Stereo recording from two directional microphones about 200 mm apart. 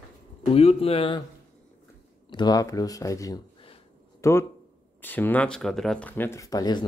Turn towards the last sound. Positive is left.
turn(degrees=20)  # may be behind; listen again after turning